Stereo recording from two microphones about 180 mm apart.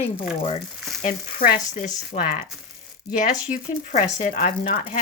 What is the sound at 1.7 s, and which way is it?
Speech, 40° left (ahead or behind).